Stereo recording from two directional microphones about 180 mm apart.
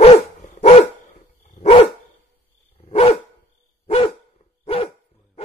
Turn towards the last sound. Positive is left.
turn(degrees=30)  # may be behind; listen again after turning